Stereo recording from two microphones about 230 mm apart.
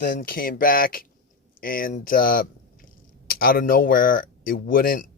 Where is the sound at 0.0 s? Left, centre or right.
Left.